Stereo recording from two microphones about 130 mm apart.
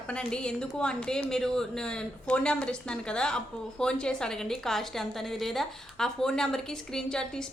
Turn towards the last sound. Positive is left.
turn(degrees=5)  # may be behind; listen again after turning